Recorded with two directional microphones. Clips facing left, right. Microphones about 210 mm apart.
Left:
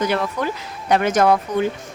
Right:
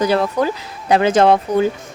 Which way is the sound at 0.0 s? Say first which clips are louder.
Right 5 dB; 35° right (ahead or behind).